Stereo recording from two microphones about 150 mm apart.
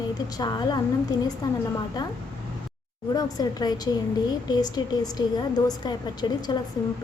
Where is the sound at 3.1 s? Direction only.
25° left (ahead or behind).